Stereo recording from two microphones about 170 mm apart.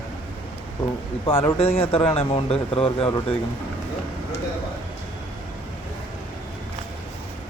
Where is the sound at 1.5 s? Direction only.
35° left (ahead or behind).